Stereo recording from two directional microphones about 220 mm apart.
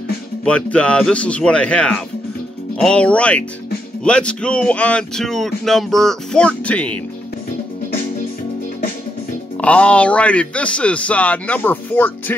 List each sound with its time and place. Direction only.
0.5 s speech: 5° left (ahead or behind)
9.6 s speech: 5° left (ahead or behind)